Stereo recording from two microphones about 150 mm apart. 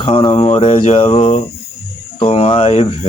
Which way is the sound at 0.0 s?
35° left (ahead or behind).